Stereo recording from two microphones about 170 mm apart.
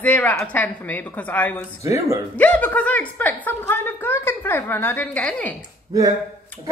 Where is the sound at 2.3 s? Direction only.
10° left (ahead or behind).